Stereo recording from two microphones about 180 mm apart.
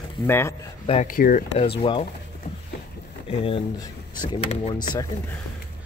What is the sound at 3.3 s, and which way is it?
Speech, 30° left (ahead or behind).